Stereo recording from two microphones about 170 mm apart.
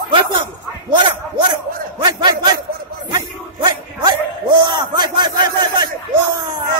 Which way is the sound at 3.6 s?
25° right (ahead or behind).